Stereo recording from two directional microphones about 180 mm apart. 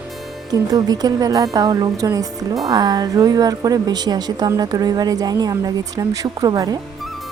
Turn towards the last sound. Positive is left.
turn(degrees=-20)  # may be behind; listen again after turning